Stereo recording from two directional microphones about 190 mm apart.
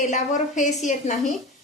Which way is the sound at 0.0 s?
40° left (ahead or behind).